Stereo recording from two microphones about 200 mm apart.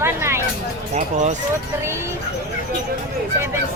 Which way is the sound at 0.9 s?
35° right (ahead or behind).